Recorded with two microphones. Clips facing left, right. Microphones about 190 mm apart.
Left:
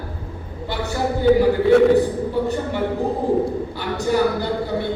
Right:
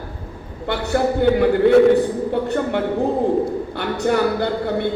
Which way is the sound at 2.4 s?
60° right (ahead or behind).